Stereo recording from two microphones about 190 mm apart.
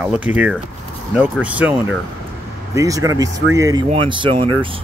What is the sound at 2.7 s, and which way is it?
Speech, 15° right (ahead or behind).